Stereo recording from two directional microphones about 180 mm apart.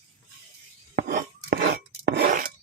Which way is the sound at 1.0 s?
55° right (ahead or behind).